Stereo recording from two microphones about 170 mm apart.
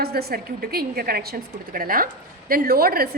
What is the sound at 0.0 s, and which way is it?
A woman's voice, 65° right (ahead or behind).